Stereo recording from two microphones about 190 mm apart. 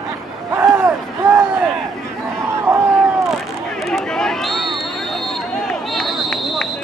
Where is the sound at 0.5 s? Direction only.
10° right (ahead or behind).